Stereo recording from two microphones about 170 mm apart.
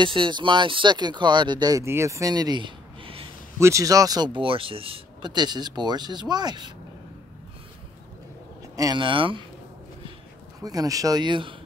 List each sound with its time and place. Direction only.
0.0 s speech: 30° right (ahead or behind)
3.5 s speech: 15° right (ahead or behind)
8.7 s speech: 25° right (ahead or behind)
10.6 s speech: 20° right (ahead or behind)